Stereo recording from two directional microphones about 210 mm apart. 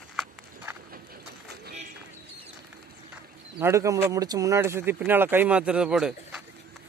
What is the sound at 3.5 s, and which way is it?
Speech, 15° right (ahead or behind).